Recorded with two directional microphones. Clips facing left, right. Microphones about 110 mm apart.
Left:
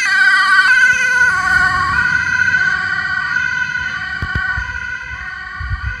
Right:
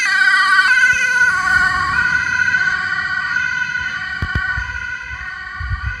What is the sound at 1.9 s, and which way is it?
Emergency vehicle, 20° left (ahead or behind).